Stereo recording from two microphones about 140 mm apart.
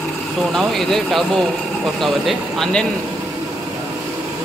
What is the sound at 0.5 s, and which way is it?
Speech, 5° left (ahead or behind).